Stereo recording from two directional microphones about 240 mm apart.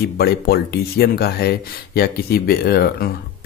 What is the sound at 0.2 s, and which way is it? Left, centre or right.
Speech, left.